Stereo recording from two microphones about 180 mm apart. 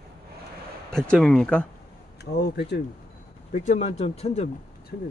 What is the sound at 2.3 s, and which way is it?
Speech, 70° left (ahead or behind).